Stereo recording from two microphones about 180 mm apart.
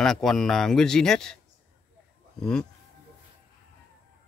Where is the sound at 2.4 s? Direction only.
5° left (ahead or behind).